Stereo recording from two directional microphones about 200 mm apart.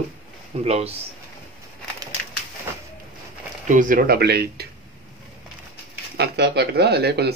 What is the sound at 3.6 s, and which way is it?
Speech, 40° right (ahead or behind).